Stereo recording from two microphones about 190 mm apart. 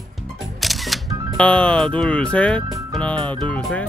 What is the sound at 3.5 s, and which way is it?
Speech, 5° left (ahead or behind).